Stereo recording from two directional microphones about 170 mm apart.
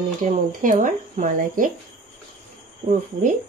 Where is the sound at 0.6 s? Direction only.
50° right (ahead or behind).